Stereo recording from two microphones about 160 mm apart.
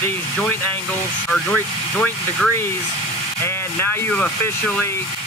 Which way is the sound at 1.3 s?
10° left (ahead or behind).